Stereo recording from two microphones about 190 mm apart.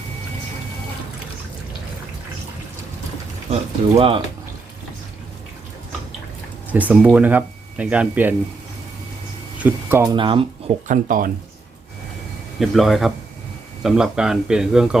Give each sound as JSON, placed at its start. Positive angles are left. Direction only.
{"t": 3.5, "sound": "speech", "side_deg": -30}
{"t": 6.7, "sound": "speech", "side_deg": -10}
{"t": 9.6, "sound": "speech", "side_deg": -10}
{"t": 10.8, "sound": "speech", "side_deg": -45}
{"t": 12.5, "sound": "speech", "side_deg": 0}